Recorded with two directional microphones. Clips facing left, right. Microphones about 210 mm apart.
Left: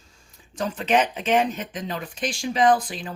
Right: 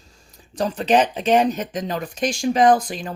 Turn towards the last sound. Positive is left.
turn(degrees=-45)  # may be behind; listen again after turning